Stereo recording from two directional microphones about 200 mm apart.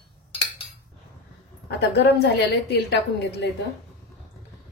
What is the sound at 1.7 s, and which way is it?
A woman's voice, 55° left (ahead or behind).